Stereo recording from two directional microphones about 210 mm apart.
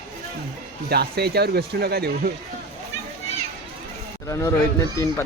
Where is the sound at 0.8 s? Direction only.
50° right (ahead or behind).